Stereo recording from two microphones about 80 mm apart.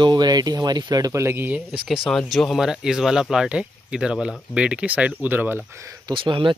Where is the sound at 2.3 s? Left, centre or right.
Centre; by 5.6 s right.